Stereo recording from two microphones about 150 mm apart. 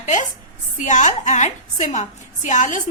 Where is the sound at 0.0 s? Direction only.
55° left (ahead or behind).